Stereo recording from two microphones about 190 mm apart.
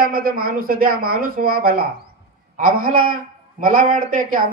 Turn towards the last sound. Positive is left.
turn(degrees=-50)  # may be behind; listen again after turning